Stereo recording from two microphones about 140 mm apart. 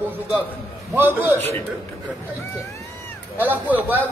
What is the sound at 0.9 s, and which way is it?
Speech, 15° right (ahead or behind).